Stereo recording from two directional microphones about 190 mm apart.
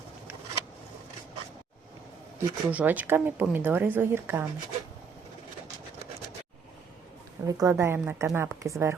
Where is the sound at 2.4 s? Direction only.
10° right (ahead or behind).